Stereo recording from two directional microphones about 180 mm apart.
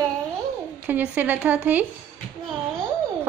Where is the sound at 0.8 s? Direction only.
10° right (ahead or behind).